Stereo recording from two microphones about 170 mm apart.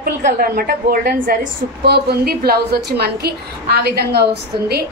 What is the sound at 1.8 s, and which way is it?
A woman's voice, 70° right (ahead or behind).